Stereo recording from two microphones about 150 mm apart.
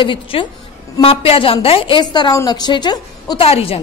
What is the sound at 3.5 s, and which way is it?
Speech, 40° left (ahead or behind).